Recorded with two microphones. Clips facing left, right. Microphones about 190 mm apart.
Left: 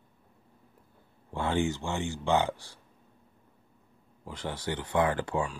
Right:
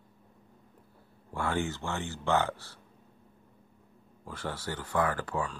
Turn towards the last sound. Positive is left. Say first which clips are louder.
# left 3 dB
turn(degrees=25)  # may be behind; listen again after turning